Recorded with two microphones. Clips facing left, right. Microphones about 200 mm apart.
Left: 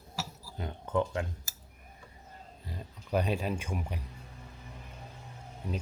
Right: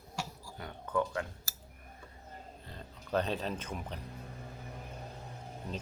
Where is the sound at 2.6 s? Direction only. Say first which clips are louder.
Left 3 dB; 10° left (ahead or behind).